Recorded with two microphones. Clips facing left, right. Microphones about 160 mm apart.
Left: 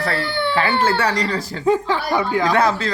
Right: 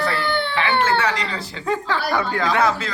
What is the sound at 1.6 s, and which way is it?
Speech, 20° left (ahead or behind).